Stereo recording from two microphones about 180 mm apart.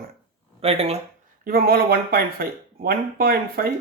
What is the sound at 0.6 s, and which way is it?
Speech, 35° right (ahead or behind).